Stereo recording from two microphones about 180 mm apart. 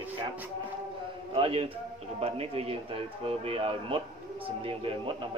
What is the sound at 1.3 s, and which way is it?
Speech, 30° right (ahead or behind).